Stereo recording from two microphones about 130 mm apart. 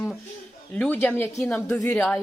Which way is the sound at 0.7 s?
10° left (ahead or behind).